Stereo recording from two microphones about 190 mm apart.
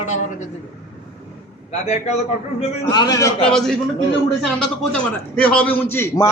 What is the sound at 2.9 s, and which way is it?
Speech, 20° left (ahead or behind).